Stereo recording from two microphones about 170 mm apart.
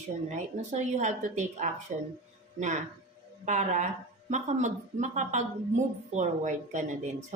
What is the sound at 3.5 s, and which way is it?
A woman's voice, 45° right (ahead or behind).